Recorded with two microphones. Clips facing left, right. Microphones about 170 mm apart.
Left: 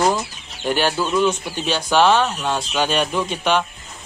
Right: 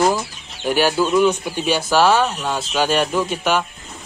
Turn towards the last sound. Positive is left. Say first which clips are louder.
# right 1 dB
turn(degrees=-5)  # may be behind; listen again after turning